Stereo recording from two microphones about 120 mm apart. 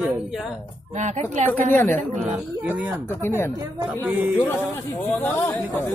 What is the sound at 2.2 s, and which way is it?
Speech, 10° right (ahead or behind).